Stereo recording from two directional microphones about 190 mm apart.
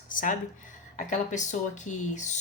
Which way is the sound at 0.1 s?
45° left (ahead or behind).